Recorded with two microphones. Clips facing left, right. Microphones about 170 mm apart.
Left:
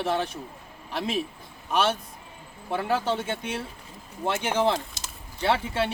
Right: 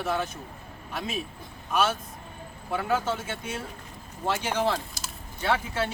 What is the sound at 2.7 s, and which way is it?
Speech, 30° left (ahead or behind).